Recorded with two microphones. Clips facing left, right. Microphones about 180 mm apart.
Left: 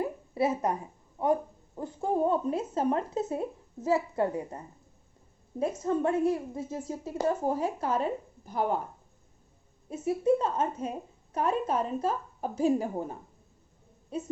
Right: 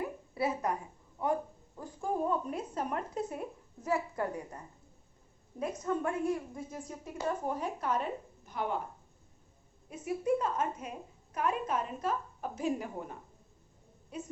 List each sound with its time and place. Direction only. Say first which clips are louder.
0.0 s a sound: left 5 dB; 25° left (ahead or behind)
1.2 s a woman's voice: left 5 dB; 25° left (ahead or behind)
9.9 s a woman's voice: left 5 dB; 25° left (ahead or behind)